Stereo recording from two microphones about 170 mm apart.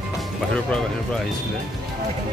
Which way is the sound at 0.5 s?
5° left (ahead or behind).